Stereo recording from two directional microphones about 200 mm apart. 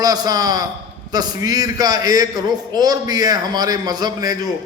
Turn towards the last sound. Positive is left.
turn(degrees=-20)  # may be behind; listen again after turning